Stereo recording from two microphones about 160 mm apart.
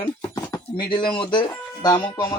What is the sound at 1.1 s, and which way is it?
Speech, 30° left (ahead or behind).